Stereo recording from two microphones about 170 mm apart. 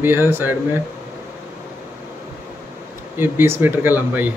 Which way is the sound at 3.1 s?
15° right (ahead or behind).